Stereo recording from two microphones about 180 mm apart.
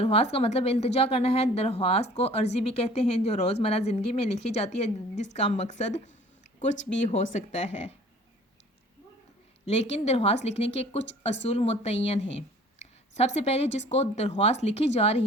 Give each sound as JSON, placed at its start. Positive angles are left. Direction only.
{"t": 0.0, "sound": "a woman's voice", "side_deg": 35}
{"t": 9.6, "sound": "a woman's voice", "side_deg": 35}
{"t": 12.8, "sound": "a sound", "side_deg": 40}
{"t": 13.9, "sound": "a woman's voice", "side_deg": 35}